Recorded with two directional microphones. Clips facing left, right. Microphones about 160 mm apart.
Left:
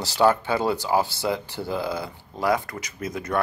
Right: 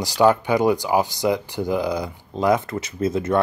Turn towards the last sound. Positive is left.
turn(degrees=-25)  # may be behind; listen again after turning